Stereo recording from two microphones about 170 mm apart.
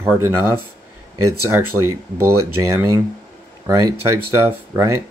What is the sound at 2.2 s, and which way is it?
Speech, 15° right (ahead or behind).